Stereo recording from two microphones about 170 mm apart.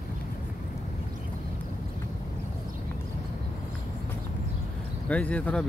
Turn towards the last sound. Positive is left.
turn(degrees=5)  # may be behind; listen again after turning